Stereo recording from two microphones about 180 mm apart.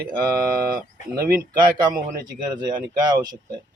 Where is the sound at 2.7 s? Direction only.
25° right (ahead or behind).